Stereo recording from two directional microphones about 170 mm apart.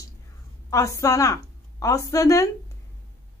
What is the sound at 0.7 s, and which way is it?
A woman's voice, 15° left (ahead or behind).